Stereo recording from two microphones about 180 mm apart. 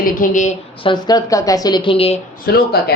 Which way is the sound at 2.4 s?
60° left (ahead or behind).